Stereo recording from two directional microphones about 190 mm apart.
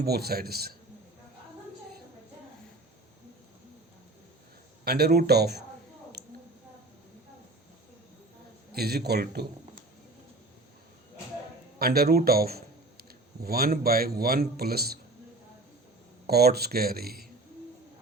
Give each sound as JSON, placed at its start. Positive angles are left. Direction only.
{"t": 0.0, "sound": "speech", "side_deg": -55}
{"t": 4.9, "sound": "speech", "side_deg": -55}
{"t": 8.7, "sound": "a man's voice", "side_deg": -55}
{"t": 11.8, "sound": "a man's voice", "side_deg": -55}
{"t": 16.2, "sound": "speech", "side_deg": -55}